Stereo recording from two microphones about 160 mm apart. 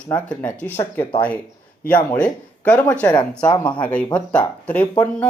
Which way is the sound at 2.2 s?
10° left (ahead or behind).